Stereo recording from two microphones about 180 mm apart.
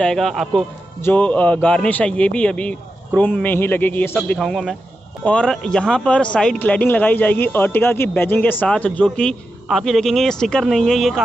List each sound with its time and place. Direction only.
0.0 s speech: centre (ahead or behind)